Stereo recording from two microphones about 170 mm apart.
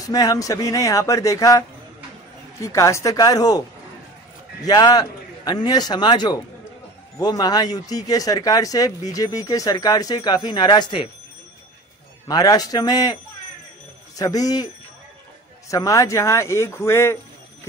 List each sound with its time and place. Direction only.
0.0 s speech: 20° left (ahead or behind)
2.6 s speech: 15° left (ahead or behind)
4.6 s speech: 20° left (ahead or behind)
12.3 s speech: 20° left (ahead or behind)
15.7 s a man's voice: 20° left (ahead or behind)